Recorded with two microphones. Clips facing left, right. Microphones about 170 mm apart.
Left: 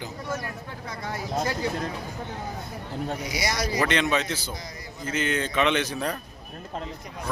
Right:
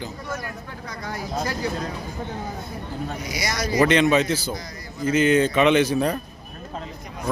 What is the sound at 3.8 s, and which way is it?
A man's voice, 5° right (ahead or behind).